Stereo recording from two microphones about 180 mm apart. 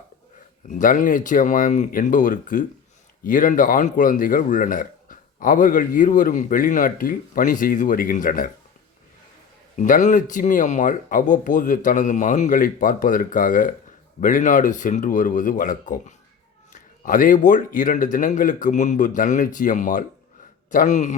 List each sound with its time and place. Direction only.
0.7 s a man's voice: 45° left (ahead or behind)
9.7 s a man's voice: 45° left (ahead or behind)